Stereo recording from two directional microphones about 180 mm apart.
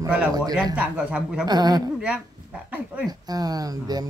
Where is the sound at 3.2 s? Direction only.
20° right (ahead or behind).